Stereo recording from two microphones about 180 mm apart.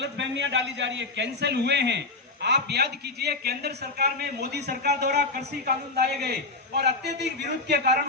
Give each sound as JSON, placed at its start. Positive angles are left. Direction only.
{"t": 0.0, "sound": "a man's voice", "side_deg": -80}